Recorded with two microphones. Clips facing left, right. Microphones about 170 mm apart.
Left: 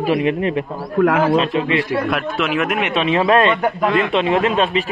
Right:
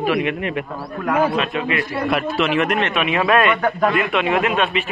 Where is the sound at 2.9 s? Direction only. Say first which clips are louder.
Left 4 dB; 30° left (ahead or behind).